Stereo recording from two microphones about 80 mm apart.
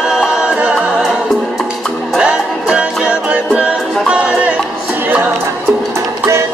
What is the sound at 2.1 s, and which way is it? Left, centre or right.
Music, centre.